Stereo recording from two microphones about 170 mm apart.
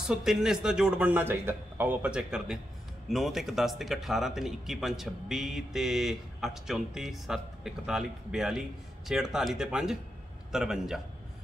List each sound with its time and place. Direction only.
0.0 s speech: 5° right (ahead or behind)